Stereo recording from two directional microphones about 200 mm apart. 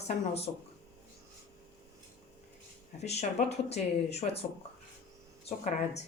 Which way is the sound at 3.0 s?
35° left (ahead or behind).